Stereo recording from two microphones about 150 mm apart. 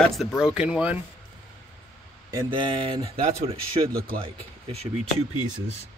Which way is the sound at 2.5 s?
35° right (ahead or behind).